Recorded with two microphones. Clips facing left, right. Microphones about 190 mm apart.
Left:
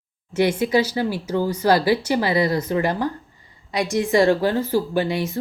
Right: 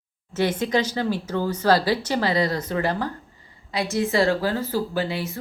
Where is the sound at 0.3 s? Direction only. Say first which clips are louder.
Left 4 dB; 10° left (ahead or behind).